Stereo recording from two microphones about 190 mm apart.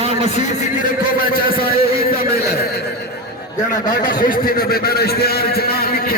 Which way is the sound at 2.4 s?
55° left (ahead or behind).